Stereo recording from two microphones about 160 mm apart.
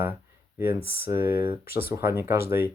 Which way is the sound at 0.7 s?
70° left (ahead or behind).